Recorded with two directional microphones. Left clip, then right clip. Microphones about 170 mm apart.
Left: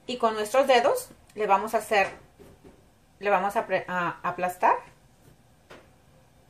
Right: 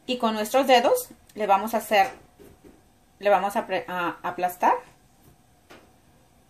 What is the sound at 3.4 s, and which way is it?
Speech, 60° right (ahead or behind).